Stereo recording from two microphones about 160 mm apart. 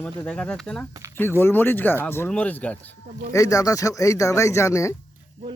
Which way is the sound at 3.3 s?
20° left (ahead or behind).